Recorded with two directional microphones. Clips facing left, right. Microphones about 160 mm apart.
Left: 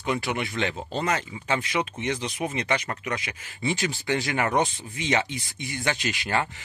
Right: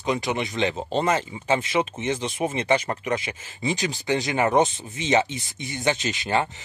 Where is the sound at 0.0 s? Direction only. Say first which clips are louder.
Right 2 dB; 20° right (ahead or behind).